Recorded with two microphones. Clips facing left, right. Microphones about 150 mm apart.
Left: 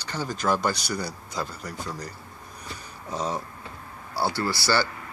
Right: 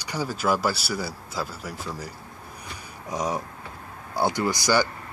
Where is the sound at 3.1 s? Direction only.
15° right (ahead or behind).